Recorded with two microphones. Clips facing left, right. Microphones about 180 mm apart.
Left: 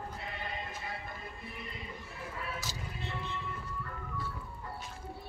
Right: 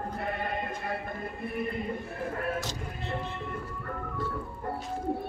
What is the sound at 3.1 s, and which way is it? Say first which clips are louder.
Music: right 6 dB; 50° right (ahead or behind).